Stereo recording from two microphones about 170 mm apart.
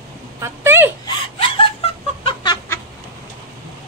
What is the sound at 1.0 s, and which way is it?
Laughter, 30° left (ahead or behind).